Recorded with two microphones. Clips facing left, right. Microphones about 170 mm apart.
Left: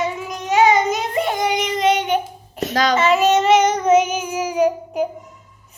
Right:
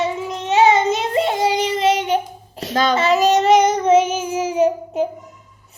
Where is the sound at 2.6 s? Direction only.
30° right (ahead or behind).